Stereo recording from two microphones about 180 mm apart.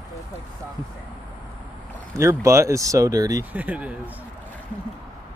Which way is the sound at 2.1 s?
15° right (ahead or behind).